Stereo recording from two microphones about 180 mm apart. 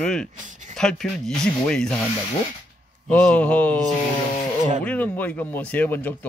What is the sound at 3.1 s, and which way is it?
Speech, 10° left (ahead or behind).